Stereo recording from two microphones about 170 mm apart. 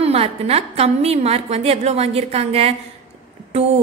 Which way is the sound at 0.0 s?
35° right (ahead or behind).